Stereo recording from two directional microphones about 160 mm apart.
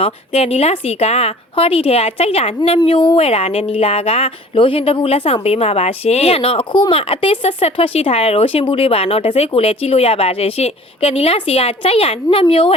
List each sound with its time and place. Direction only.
0.0 s speech: 40° left (ahead or behind)